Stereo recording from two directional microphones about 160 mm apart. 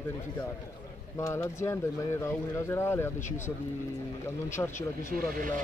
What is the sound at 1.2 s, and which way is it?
Speech, 20° left (ahead or behind).